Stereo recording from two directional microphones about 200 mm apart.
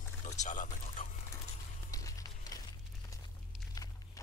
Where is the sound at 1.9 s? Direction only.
15° left (ahead or behind).